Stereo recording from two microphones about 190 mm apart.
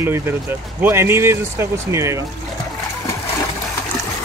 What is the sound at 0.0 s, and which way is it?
Speech, 10° right (ahead or behind).